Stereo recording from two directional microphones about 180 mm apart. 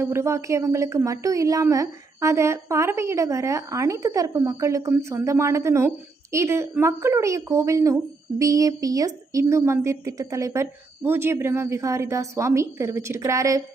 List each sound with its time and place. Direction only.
0.0 s a woman's voice: 15° right (ahead or behind)